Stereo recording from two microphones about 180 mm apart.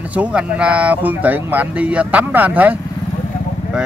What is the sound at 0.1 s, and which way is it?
Speech, 5° right (ahead or behind).